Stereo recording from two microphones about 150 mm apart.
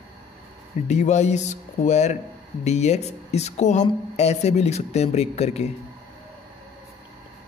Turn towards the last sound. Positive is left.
turn(degrees=45)  # may be behind; listen again after turning